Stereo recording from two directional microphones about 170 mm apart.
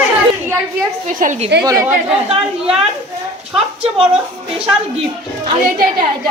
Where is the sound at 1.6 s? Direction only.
20° right (ahead or behind).